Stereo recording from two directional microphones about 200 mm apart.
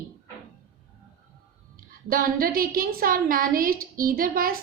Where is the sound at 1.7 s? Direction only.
45° right (ahead or behind).